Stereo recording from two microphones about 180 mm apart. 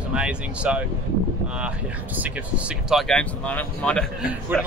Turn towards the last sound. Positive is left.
turn(degrees=-10)  # may be behind; listen again after turning